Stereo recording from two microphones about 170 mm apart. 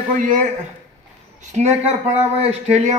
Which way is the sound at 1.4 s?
40° right (ahead or behind).